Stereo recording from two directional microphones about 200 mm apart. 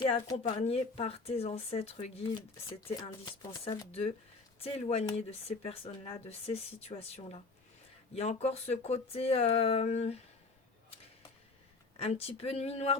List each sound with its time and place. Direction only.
0.0 s speech: 20° left (ahead or behind)
2.3 s speech: 25° left (ahead or behind)
11.9 s speech: 30° left (ahead or behind)